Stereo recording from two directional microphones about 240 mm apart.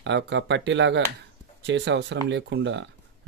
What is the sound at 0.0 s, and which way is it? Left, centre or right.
Speech, right.